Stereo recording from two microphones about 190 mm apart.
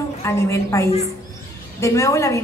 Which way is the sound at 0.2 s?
15° left (ahead or behind).